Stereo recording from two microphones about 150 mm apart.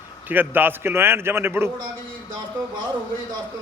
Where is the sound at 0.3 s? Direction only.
15° right (ahead or behind).